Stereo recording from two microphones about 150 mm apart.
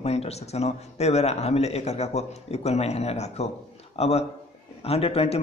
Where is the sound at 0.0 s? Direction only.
45° left (ahead or behind).